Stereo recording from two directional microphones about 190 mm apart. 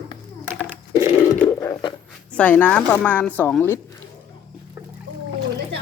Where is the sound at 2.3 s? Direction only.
10° left (ahead or behind).